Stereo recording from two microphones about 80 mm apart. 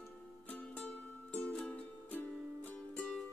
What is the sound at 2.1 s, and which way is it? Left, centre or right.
Music, left.